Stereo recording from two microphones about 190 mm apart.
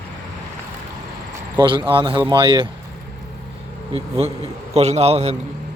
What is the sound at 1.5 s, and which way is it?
Speech, 25° right (ahead or behind).